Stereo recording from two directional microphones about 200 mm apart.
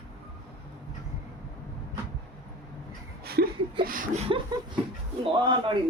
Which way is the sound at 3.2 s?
50° right (ahead or behind).